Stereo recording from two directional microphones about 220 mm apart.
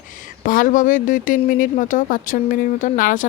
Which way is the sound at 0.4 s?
35° left (ahead or behind).